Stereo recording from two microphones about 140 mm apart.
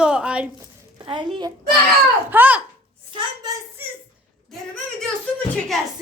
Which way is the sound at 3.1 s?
30° right (ahead or behind).